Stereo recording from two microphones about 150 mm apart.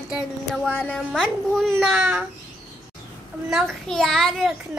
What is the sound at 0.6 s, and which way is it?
A child's voice, 5° left (ahead or behind).